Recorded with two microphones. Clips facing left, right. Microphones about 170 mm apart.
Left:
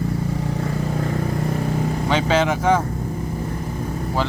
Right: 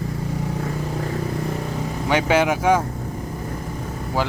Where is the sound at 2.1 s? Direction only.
10° right (ahead or behind).